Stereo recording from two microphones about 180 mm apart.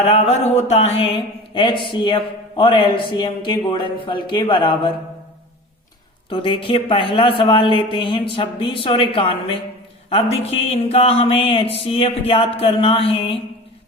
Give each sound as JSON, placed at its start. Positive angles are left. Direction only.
{"t": 0.0, "sound": "mantra", "side_deg": 35}
{"t": 6.2, "sound": "mantra", "side_deg": 30}
{"t": 10.1, "sound": "speech", "side_deg": 35}